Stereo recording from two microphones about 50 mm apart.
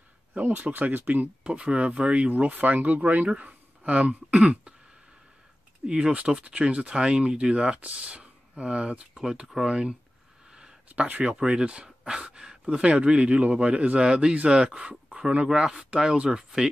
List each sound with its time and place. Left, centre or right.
0.4 s speech: right
1.4 s speech: right
5.9 s speech: centre